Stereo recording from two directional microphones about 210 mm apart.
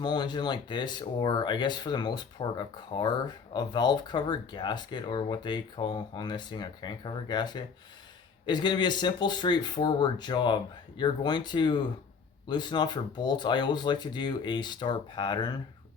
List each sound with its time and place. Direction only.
0.0 s speech: 20° left (ahead or behind)